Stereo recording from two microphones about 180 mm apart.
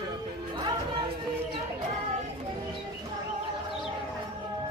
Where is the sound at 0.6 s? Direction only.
25° right (ahead or behind).